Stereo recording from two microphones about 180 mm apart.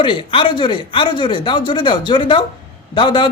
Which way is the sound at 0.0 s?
30° left (ahead or behind).